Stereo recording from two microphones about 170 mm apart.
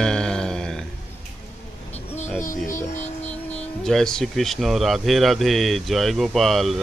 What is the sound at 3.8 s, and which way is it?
Speech, 5° left (ahead or behind).